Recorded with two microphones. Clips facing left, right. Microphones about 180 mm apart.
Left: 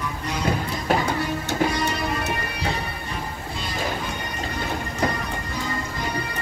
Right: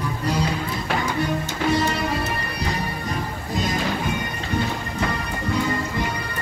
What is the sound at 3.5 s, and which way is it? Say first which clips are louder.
Music: right 12 dB; 45° right (ahead or behind).